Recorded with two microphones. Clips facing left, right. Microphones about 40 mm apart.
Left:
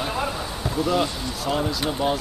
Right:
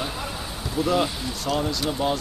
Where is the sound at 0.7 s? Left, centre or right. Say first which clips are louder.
Even; centre.